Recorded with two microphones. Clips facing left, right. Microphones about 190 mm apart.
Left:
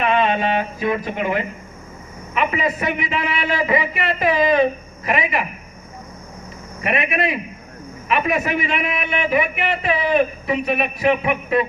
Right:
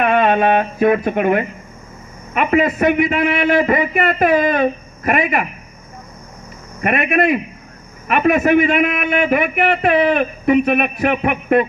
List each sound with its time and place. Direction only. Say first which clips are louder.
0.0 s a man's voice: right 4 dB; 55° right (ahead or behind)
6.8 s a man's voice: right 5 dB; 50° right (ahead or behind)